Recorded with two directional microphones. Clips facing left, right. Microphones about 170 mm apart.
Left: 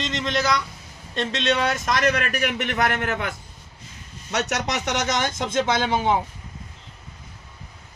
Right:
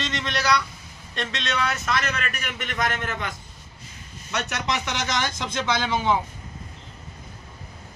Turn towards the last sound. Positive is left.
turn(degrees=50)  # may be behind; listen again after turning